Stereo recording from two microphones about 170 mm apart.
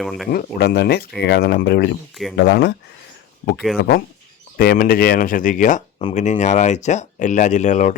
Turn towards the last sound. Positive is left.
turn(degrees=45)  # may be behind; listen again after turning